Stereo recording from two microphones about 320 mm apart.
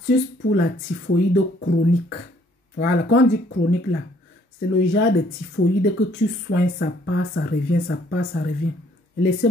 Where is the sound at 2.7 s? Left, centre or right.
Left.